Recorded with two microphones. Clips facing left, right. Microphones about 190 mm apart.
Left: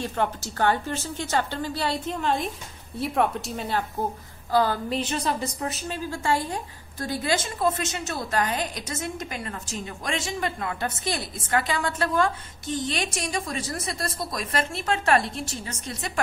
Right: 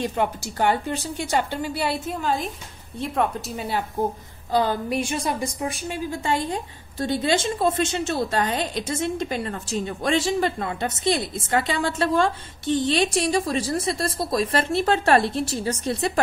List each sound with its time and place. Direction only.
0.0 s a woman's voice: 15° right (ahead or behind)
4.5 s a woman's voice: 20° right (ahead or behind)